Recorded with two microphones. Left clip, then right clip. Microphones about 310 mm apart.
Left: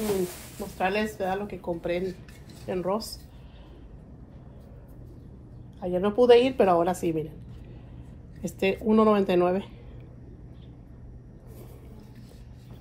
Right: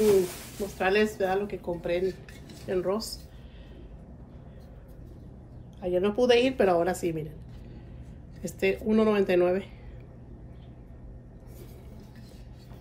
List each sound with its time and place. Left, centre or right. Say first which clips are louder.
0.7 s a woman's voice: right 2 dB; centre
5.9 s a woman's voice: left 4 dB; centre
8.4 s a woman's voice: left 1 dB; centre